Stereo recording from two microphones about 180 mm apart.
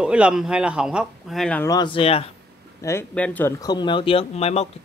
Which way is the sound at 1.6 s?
20° left (ahead or behind).